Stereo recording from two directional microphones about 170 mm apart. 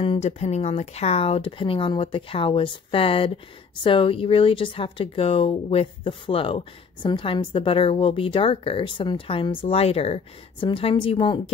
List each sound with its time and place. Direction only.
0.0 s speech: 35° left (ahead or behind)